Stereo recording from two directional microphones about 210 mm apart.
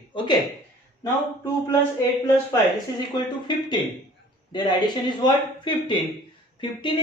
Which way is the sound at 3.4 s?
20° left (ahead or behind).